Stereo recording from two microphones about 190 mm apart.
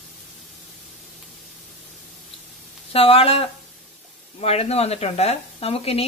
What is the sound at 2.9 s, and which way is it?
Speech, 30° left (ahead or behind).